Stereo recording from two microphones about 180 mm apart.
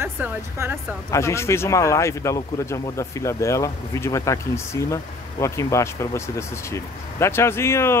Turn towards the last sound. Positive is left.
turn(degrees=15)  # may be behind; listen again after turning